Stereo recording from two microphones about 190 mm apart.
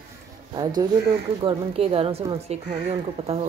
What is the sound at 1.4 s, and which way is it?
Speech, 30° right (ahead or behind).